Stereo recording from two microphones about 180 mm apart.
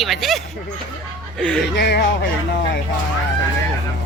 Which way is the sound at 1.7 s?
65° left (ahead or behind).